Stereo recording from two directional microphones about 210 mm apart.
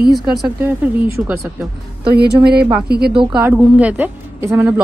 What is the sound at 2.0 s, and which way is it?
Speech, 50° right (ahead or behind).